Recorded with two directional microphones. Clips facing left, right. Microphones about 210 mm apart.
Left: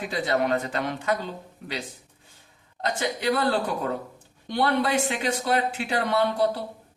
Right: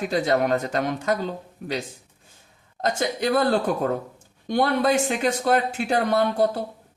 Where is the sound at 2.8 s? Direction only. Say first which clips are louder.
Right 4 dB; 45° right (ahead or behind).